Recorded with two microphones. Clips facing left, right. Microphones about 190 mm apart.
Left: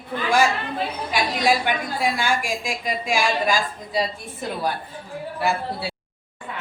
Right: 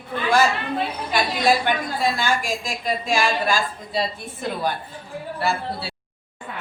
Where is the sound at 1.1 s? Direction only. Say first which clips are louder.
Right 1 dB; 10° left (ahead or behind).